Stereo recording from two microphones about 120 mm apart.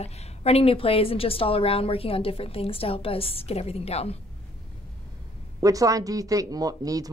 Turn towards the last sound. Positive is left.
turn(degrees=-30)  # may be behind; listen again after turning